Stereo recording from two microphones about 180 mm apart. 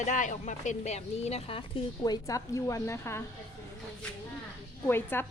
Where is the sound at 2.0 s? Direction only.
20° left (ahead or behind).